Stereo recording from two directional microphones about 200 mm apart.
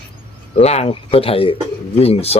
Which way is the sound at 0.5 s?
30° left (ahead or behind).